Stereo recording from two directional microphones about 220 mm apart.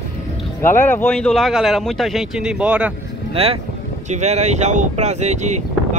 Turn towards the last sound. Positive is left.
turn(degrees=-35)  # may be behind; listen again after turning